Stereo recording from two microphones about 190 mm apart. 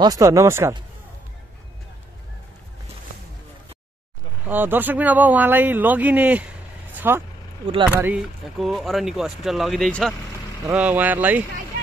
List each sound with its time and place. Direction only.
0.0 s speech: 20° right (ahead or behind)
4.5 s speech: 10° right (ahead or behind)
6.9 s vehicle: 10° right (ahead or behind)
7.9 s speech: 5° right (ahead or behind)
10.7 s speech: 5° right (ahead or behind)